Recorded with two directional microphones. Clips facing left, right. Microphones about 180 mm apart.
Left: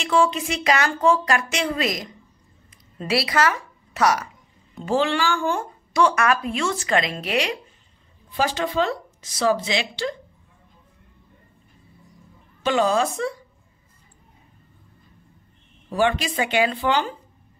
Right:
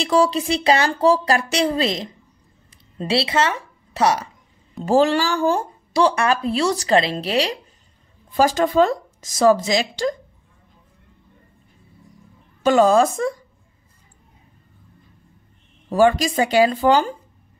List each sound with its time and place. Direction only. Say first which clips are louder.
0.0 s a woman's voice: right 3 dB; 35° right (ahead or behind)
4.8 s a woman's voice: right 5 dB; 40° right (ahead or behind)
8.3 s speech: right 6 dB; 45° right (ahead or behind)
12.6 s speech: right 6 dB; 45° right (ahead or behind)
15.9 s a woman's voice: right 6 dB; 40° right (ahead or behind)